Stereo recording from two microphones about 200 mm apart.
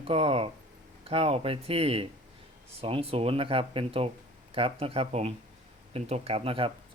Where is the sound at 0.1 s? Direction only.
30° right (ahead or behind).